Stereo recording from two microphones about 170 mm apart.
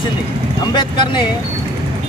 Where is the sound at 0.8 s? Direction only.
25° left (ahead or behind).